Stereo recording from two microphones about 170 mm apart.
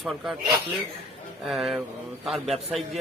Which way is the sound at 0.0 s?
Centre (ahead or behind).